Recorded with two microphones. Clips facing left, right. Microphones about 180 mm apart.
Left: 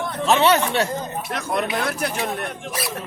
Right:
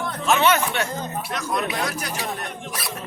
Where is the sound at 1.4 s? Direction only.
55° left (ahead or behind).